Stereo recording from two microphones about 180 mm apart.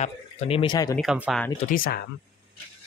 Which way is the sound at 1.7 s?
55° left (ahead or behind).